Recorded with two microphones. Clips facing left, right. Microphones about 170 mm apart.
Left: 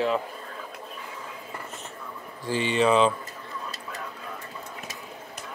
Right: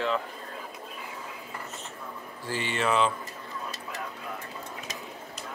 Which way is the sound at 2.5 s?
20° left (ahead or behind).